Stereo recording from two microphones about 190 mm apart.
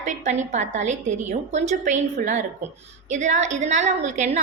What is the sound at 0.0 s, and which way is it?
A woman's voice, 40° right (ahead or behind).